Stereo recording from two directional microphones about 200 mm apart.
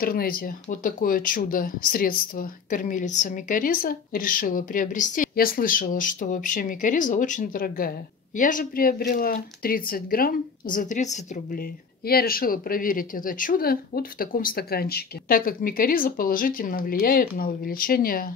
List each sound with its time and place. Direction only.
0.0 s speech: 50° left (ahead or behind)
12.1 s speech: 50° left (ahead or behind)